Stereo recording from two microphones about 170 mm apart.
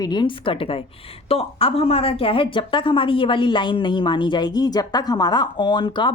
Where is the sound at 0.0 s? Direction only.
25° left (ahead or behind).